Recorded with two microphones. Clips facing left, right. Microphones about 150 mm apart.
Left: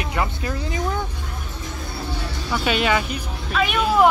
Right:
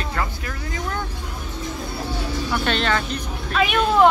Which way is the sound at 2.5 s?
5° left (ahead or behind).